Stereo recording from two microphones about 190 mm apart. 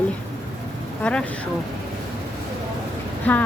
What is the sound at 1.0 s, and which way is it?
Speech, 5° left (ahead or behind).